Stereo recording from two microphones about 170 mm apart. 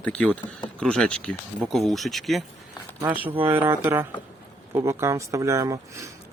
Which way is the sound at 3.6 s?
15° right (ahead or behind).